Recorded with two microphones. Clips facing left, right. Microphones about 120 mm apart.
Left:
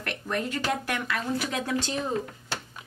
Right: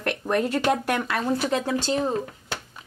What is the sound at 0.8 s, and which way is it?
Speech, 45° right (ahead or behind).